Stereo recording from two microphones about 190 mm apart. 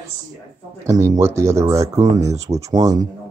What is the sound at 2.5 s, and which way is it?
Speech, 20° right (ahead or behind).